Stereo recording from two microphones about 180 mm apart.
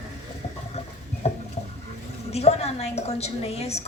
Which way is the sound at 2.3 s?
35° left (ahead or behind).